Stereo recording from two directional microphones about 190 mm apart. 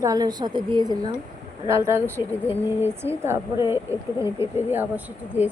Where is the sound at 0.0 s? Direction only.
20° right (ahead or behind).